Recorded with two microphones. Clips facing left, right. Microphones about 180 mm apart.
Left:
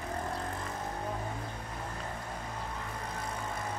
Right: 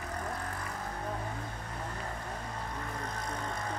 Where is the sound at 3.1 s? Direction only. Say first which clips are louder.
Even; 5° left (ahead or behind).